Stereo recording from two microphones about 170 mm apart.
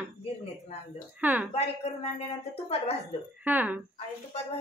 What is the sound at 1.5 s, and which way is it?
Speech, 35° left (ahead or behind).